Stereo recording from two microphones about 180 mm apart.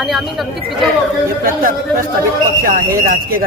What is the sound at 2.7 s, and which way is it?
Speech, 55° right (ahead or behind).